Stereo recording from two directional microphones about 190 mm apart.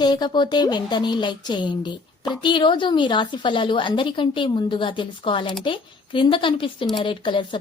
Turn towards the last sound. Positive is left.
turn(degrees=25)  # may be behind; listen again after turning